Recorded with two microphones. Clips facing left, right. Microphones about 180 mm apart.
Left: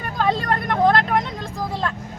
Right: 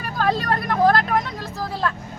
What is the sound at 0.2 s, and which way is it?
Vehicle, 5° right (ahead or behind).